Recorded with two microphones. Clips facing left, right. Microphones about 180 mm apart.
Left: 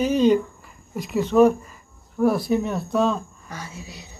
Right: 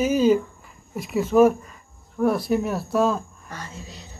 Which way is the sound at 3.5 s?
10° left (ahead or behind).